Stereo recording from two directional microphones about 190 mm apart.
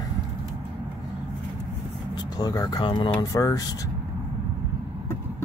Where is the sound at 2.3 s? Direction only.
20° left (ahead or behind).